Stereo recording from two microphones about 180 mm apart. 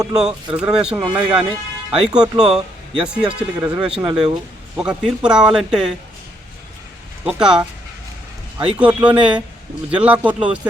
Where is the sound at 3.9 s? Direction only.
30° right (ahead or behind).